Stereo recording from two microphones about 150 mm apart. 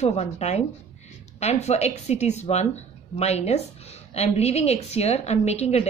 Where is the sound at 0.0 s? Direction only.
45° left (ahead or behind).